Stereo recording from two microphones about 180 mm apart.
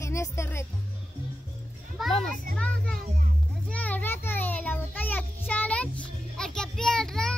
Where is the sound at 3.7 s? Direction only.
10° left (ahead or behind).